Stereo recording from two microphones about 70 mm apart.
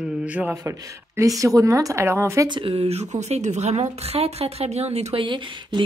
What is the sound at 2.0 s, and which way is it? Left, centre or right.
Speech, right.